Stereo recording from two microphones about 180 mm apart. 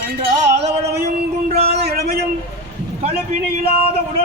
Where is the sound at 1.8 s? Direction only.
60° right (ahead or behind).